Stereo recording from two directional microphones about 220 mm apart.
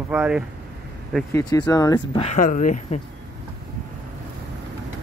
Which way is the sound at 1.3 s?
15° left (ahead or behind).